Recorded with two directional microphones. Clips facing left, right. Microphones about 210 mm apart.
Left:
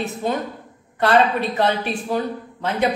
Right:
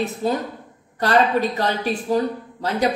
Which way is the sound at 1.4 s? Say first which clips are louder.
Right 3 dB; 35° right (ahead or behind).